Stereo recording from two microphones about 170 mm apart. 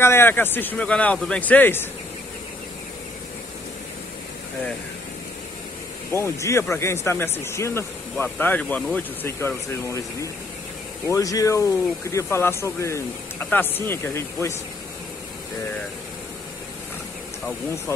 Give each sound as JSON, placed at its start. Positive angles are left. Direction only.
{"t": 0.0, "sound": "speech", "side_deg": 15}
{"t": 6.1, "sound": "speech", "side_deg": 15}